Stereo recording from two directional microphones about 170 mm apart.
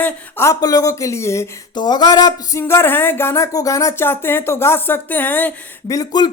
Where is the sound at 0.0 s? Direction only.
15° left (ahead or behind).